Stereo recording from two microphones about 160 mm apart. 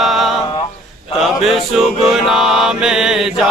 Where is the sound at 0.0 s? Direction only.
Centre (ahead or behind).